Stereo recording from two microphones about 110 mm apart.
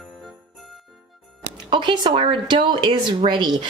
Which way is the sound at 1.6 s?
50° right (ahead or behind).